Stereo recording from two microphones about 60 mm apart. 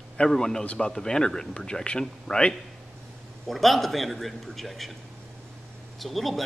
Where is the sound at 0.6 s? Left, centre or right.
Left.